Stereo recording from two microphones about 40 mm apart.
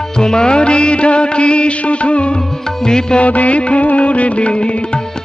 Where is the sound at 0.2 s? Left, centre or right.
Centre.